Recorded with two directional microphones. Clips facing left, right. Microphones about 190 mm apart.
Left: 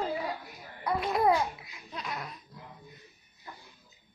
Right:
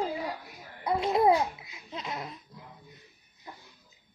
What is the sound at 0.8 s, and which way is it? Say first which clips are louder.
Laughter: right 3 dB; 20° right (ahead or behind).